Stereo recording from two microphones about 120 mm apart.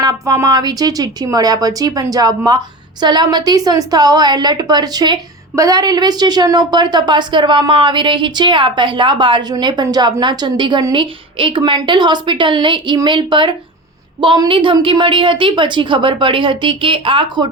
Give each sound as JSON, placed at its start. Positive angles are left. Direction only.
{"t": 0.0, "sound": "a woman's voice", "side_deg": -35}